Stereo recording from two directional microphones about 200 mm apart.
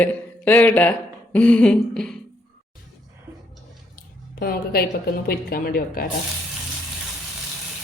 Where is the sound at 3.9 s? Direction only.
50° left (ahead or behind).